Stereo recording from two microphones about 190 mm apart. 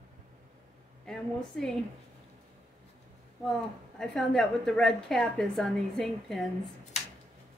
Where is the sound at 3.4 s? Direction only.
Centre (ahead or behind).